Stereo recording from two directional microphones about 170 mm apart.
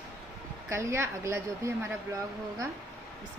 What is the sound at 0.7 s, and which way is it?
Speech, 15° right (ahead or behind).